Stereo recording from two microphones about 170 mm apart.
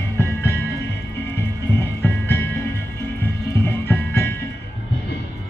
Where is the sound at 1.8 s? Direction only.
15° left (ahead or behind).